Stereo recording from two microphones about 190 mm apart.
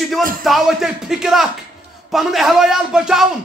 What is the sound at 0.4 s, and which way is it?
A man's voice, centre (ahead or behind).